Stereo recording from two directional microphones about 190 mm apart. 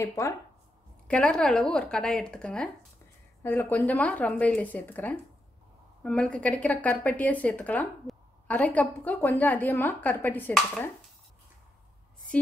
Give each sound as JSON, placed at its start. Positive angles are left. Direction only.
{"t": 0.0, "sound": "a woman's voice", "side_deg": 15}
{"t": 1.0, "sound": "a woman's voice", "side_deg": 5}